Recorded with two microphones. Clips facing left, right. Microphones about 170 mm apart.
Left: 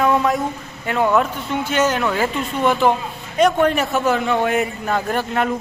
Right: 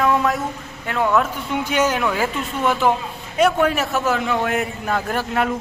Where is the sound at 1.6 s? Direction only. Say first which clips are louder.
Left 1 dB; 10° right (ahead or behind).